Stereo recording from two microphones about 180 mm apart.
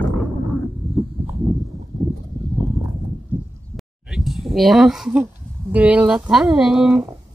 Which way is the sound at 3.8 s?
Centre (ahead or behind).